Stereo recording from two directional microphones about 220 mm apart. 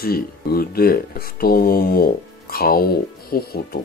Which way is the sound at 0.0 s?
45° left (ahead or behind).